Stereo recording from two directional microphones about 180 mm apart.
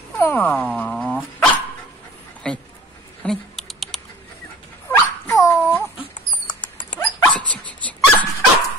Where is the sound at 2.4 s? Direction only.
5° left (ahead or behind).